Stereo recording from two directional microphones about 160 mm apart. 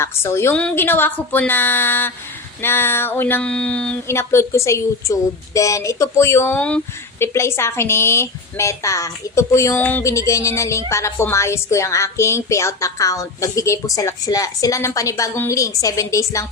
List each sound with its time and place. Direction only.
0.0 s speech: 15° left (ahead or behind)